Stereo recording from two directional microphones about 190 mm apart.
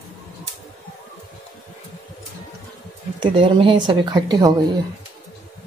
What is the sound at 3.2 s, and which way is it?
Speech, 25° right (ahead or behind).